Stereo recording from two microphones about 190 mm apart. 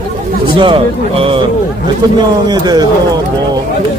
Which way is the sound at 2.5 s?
20° right (ahead or behind).